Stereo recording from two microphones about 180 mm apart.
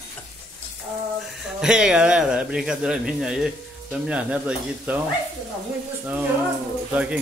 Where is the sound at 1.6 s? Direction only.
5° right (ahead or behind).